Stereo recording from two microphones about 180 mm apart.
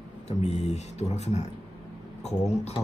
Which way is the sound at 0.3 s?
35° left (ahead or behind).